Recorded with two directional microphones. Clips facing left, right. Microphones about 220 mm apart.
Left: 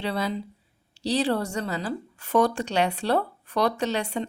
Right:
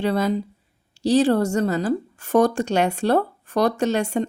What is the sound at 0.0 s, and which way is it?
A woman's voice, 45° right (ahead or behind).